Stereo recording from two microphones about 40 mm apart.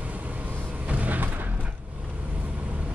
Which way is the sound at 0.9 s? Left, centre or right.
Right.